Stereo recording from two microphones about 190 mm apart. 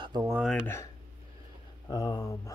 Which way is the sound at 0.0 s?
20° right (ahead or behind).